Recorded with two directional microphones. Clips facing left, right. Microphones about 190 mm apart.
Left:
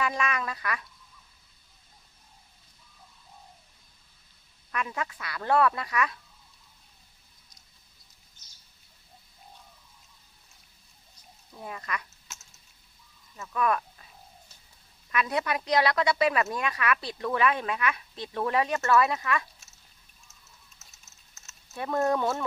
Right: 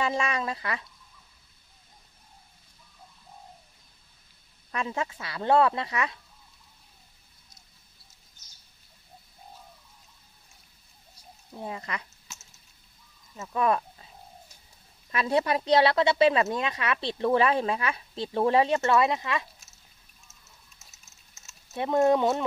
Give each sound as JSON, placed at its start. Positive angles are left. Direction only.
{"t": 0.0, "sound": "speech", "side_deg": -25}
{"t": 4.6, "sound": "speech", "side_deg": -25}
{"t": 11.5, "sound": "speech", "side_deg": -25}
{"t": 13.4, "sound": "speech", "side_deg": -25}
{"t": 15.0, "sound": "speech", "side_deg": -30}
{"t": 20.8, "sound": "typing", "side_deg": 0}
{"t": 21.7, "sound": "speech", "side_deg": -20}